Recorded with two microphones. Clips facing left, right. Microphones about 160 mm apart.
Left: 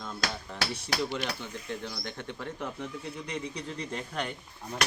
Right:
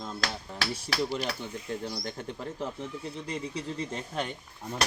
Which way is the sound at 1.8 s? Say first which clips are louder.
Right 3 dB; 35° right (ahead or behind).